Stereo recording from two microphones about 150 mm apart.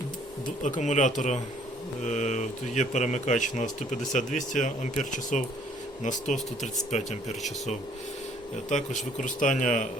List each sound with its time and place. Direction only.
0.4 s speech: 55° left (ahead or behind)